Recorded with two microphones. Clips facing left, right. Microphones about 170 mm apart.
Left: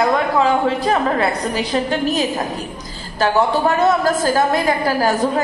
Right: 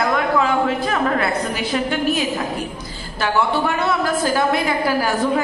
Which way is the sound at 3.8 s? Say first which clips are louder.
Left 4 dB; 40° left (ahead or behind).